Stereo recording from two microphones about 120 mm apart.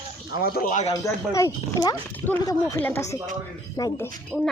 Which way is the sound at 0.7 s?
75° left (ahead or behind).